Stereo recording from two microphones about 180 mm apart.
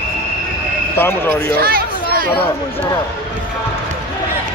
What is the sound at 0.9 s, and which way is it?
Speech, 10° left (ahead or behind).